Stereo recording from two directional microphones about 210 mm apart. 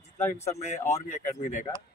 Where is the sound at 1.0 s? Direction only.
35° left (ahead or behind).